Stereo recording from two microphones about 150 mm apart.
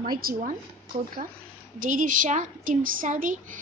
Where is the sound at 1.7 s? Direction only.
60° right (ahead or behind).